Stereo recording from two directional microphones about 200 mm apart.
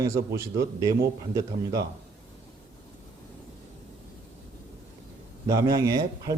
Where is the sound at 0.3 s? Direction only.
15° right (ahead or behind).